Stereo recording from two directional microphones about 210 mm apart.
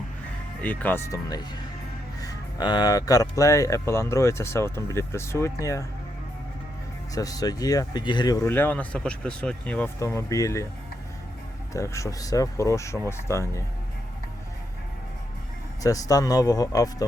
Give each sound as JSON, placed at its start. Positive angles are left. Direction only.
{"t": 0.6, "sound": "speech", "side_deg": 10}
{"t": 7.1, "sound": "speech", "side_deg": 15}
{"t": 11.7, "sound": "speech", "side_deg": 15}
{"t": 15.8, "sound": "speech", "side_deg": 15}